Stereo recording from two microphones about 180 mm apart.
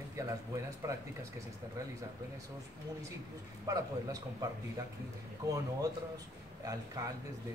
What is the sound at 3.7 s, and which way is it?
Speech, 20° right (ahead or behind).